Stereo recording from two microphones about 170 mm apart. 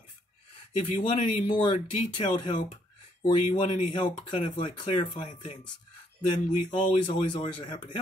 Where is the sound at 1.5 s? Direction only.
30° left (ahead or behind).